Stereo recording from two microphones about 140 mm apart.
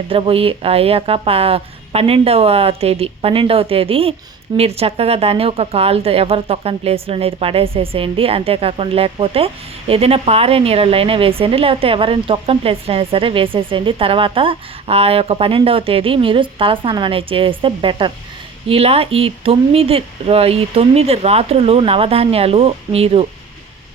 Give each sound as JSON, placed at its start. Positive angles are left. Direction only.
{"t": 0.1, "sound": "a woman's voice", "side_deg": -40}